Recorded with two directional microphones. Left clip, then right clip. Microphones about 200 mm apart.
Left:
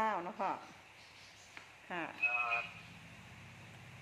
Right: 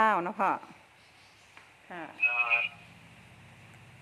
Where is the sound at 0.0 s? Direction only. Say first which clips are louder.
Right 10 dB; 35° right (ahead or behind).